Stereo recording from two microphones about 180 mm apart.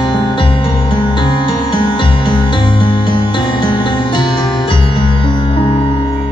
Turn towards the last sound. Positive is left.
turn(degrees=25)  # may be behind; listen again after turning